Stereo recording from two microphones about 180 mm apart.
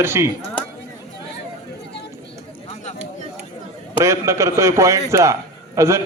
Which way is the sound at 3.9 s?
15° right (ahead or behind).